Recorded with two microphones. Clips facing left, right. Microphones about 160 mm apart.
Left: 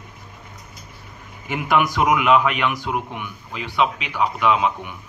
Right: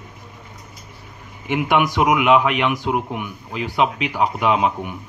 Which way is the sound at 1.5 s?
20° right (ahead or behind).